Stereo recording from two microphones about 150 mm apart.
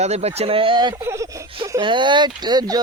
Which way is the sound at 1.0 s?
20° right (ahead or behind).